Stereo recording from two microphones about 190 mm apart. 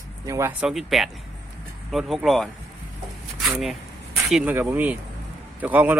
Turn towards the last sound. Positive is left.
turn(degrees=-10)  # may be behind; listen again after turning